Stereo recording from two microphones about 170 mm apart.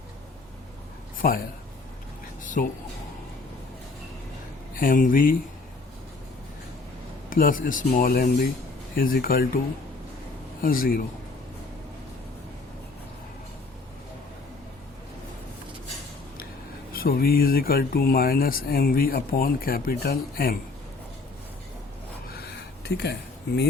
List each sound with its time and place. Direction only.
1.2 s speech: 55° left (ahead or behind)
2.4 s music: 50° left (ahead or behind)
4.7 s speech: 55° left (ahead or behind)
7.3 s speech: 55° left (ahead or behind)
10.6 s speech: 55° left (ahead or behind)
16.9 s speech: 60° left (ahead or behind)
22.8 s speech: 80° left